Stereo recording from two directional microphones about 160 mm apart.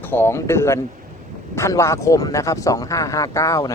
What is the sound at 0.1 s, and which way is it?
Speech, 15° left (ahead or behind).